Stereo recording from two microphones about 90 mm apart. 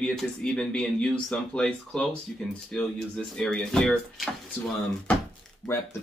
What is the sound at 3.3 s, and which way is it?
Speech, 10° left (ahead or behind).